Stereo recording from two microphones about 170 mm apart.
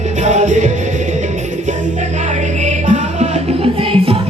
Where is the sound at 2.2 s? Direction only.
45° right (ahead or behind).